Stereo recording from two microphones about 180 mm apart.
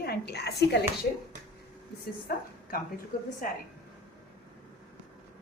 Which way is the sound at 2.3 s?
55° left (ahead or behind).